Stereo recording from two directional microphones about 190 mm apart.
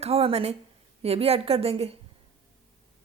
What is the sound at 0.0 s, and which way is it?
A woman's voice, 30° right (ahead or behind).